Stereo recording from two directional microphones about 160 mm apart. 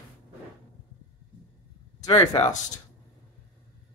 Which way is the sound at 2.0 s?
25° left (ahead or behind).